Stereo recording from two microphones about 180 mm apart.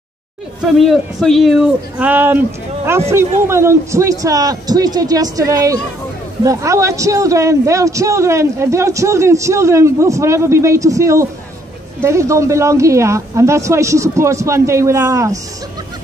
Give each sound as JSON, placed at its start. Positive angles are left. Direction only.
{"t": 0.6, "sound": "a man's voice", "side_deg": 0}